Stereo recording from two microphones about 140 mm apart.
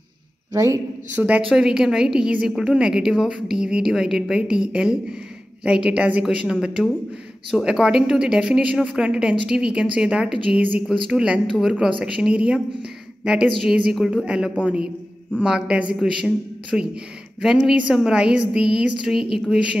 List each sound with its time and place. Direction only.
0.5 s a man's voice: 20° right (ahead or behind)
1.5 s a woman's voice: 5° right (ahead or behind)